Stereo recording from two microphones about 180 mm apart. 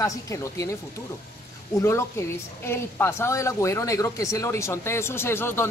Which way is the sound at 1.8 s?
15° left (ahead or behind).